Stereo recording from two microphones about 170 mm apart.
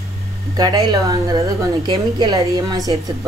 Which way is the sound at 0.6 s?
25° right (ahead or behind).